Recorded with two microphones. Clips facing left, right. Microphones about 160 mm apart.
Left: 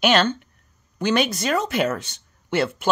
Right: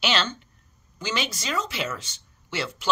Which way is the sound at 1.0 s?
55° left (ahead or behind).